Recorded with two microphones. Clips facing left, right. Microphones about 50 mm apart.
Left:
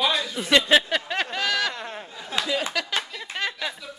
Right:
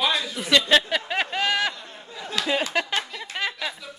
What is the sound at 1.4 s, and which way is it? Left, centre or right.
Speech, right.